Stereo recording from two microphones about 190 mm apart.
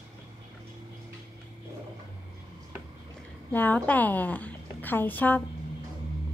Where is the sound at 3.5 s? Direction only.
10° left (ahead or behind).